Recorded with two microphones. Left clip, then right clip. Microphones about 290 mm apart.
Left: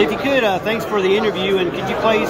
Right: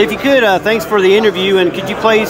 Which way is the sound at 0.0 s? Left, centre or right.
Centre.